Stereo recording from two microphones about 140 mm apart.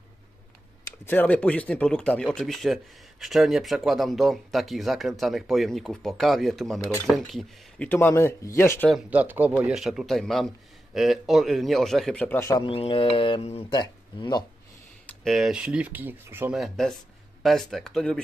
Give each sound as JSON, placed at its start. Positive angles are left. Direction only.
{"t": 1.0, "sound": "speech", "side_deg": 10}
{"t": 7.9, "sound": "speech", "side_deg": 15}
{"t": 9.1, "sound": "speech", "side_deg": -10}
{"t": 12.6, "sound": "mantra", "side_deg": 40}
{"t": 13.7, "sound": "speech", "side_deg": 30}
{"t": 15.0, "sound": "speech", "side_deg": 0}
{"t": 16.5, "sound": "speech", "side_deg": 0}